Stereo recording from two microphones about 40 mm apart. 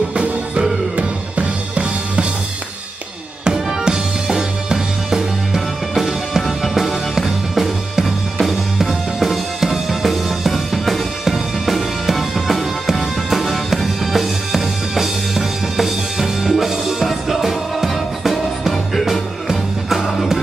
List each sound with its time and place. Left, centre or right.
0.1 s music: right
3.8 s music: centre